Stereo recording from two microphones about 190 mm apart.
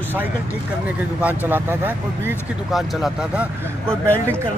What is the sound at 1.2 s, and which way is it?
Speech, 10° right (ahead or behind).